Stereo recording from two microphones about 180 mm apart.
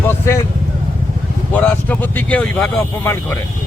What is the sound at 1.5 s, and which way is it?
Speech, 10° left (ahead or behind).